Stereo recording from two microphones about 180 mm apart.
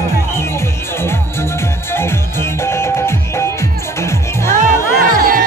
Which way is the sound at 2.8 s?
15° left (ahead or behind).